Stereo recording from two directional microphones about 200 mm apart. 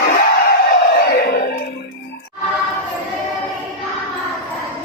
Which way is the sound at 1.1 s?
50° left (ahead or behind).